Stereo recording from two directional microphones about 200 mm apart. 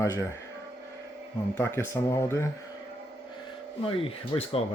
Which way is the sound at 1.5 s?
15° left (ahead or behind).